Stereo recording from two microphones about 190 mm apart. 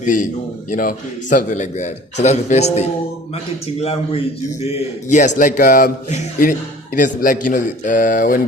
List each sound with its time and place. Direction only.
0.0 s a man's voice: 40° left (ahead or behind)